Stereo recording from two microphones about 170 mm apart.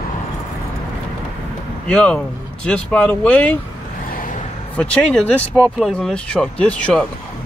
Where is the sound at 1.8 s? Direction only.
5° left (ahead or behind).